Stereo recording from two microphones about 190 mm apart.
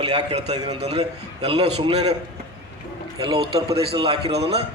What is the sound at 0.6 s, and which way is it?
A man's voice, 35° right (ahead or behind).